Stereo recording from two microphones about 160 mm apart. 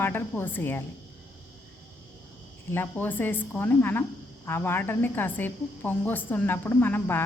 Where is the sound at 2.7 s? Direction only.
15° left (ahead or behind).